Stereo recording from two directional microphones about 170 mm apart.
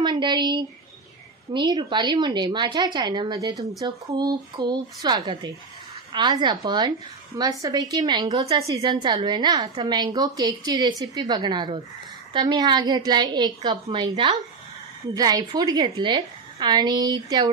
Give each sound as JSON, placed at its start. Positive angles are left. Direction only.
{"t": 0.0, "sound": "a woman's voice", "side_deg": -25}